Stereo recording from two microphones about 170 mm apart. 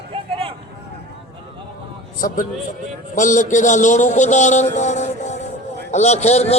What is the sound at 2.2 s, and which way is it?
A man's voice, 55° left (ahead or behind).